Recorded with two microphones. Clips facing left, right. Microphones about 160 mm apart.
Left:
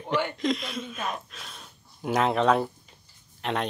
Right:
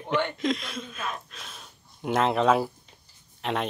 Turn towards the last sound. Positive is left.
turn(degrees=0)  # may be behind; listen again after turning